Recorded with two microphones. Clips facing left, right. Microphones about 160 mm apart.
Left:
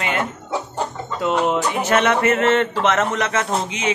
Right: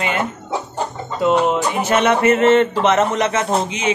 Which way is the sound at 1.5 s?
10° right (ahead or behind).